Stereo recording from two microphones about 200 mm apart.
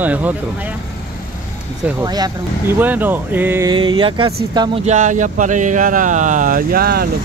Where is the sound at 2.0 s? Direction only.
20° right (ahead or behind).